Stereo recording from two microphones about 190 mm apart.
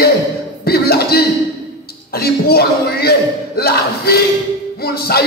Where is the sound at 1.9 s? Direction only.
55° left (ahead or behind).